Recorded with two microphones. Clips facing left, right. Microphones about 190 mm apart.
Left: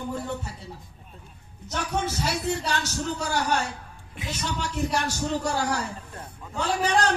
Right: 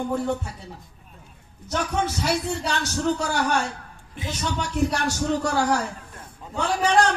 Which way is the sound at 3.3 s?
65° right (ahead or behind).